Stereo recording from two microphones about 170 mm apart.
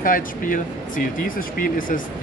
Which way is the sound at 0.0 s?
55° left (ahead or behind).